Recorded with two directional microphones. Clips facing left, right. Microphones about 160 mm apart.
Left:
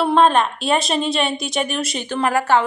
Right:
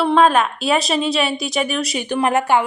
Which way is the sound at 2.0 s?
20° right (ahead or behind).